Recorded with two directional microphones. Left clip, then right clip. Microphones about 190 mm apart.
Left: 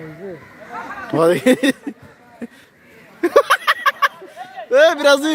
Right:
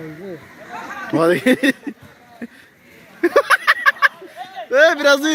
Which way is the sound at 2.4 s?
5° left (ahead or behind).